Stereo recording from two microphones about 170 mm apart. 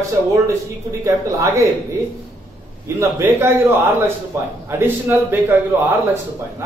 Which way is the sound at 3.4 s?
15° right (ahead or behind).